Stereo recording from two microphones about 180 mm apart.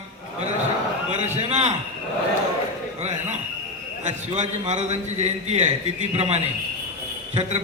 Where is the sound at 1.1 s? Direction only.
35° right (ahead or behind).